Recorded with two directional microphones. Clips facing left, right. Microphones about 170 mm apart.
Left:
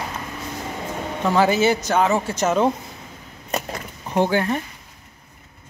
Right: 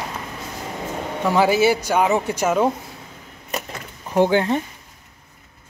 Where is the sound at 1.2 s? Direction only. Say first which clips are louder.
Right 1 dB; 10° right (ahead or behind).